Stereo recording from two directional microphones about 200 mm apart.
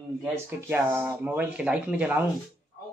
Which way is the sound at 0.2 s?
10° right (ahead or behind).